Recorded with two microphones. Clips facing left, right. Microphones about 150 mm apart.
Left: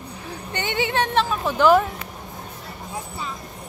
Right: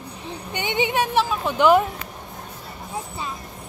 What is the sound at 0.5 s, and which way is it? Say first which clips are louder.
Speech: right 1 dB; 15° right (ahead or behind).